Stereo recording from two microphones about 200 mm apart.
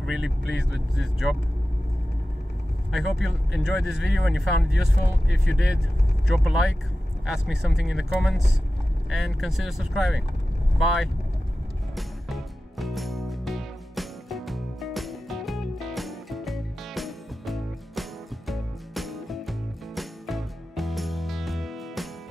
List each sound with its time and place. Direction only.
0.0 s speech: centre (ahead or behind)
2.9 s speech: centre (ahead or behind)
11.9 s music: centre (ahead or behind)